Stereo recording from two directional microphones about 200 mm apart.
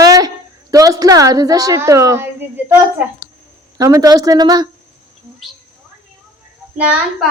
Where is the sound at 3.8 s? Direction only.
15° right (ahead or behind).